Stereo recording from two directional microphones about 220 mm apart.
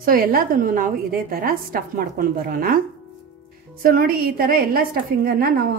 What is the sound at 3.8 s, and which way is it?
A woman's voice, 40° right (ahead or behind).